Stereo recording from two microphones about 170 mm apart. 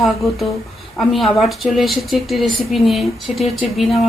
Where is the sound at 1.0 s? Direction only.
Centre (ahead or behind).